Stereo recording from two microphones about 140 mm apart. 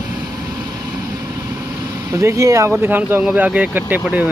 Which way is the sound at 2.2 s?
20° right (ahead or behind).